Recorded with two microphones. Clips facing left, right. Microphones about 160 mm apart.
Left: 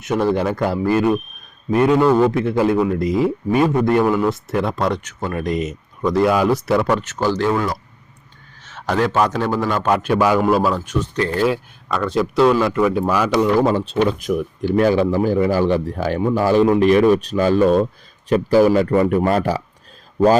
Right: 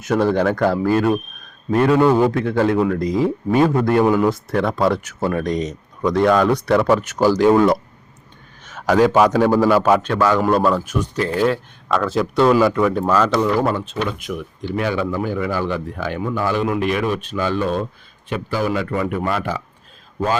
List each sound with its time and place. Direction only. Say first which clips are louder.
0.0 s speech: right 1 dB; centre (ahead or behind)
6.8 s a man's voice: right 3 dB; 10° right (ahead or behind)
8.6 s a man's voice: right 4 dB; 10° right (ahead or behind)
10.0 s a man's voice: left 1 dB; 15° left (ahead or behind)
10.4 s speech: even; 5° left (ahead or behind)
13.7 s speech: left 6 dB; 30° left (ahead or behind)
14.2 s a man's voice: left 7 dB; 40° left (ahead or behind)